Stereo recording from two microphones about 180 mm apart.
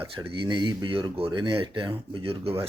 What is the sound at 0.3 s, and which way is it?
Speech, 25° right (ahead or behind).